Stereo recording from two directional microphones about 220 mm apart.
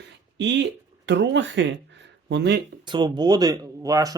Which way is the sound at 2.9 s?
20° right (ahead or behind).